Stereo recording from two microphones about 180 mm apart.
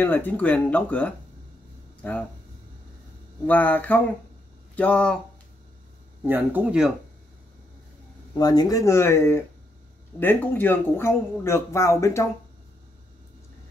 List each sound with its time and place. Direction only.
0.0 s speech: 10° left (ahead or behind)
3.4 s speech: 10° left (ahead or behind)
6.2 s speech: 10° right (ahead or behind)
8.4 s speech: 20° left (ahead or behind)